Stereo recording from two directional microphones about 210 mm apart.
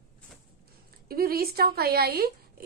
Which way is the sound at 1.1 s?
45° right (ahead or behind).